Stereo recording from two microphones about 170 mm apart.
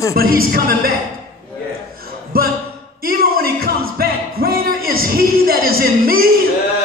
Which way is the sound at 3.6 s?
60° right (ahead or behind).